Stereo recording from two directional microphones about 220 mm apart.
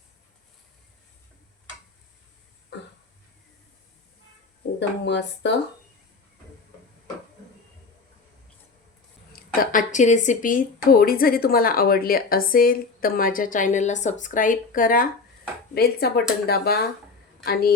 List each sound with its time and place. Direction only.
4.8 s speech: 55° left (ahead or behind)
9.6 s a woman's voice: 35° left (ahead or behind)